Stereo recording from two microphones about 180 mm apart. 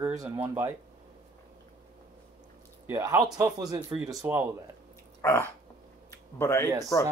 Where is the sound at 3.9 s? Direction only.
Centre (ahead or behind).